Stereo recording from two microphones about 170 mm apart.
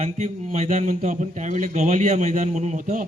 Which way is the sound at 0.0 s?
40° right (ahead or behind).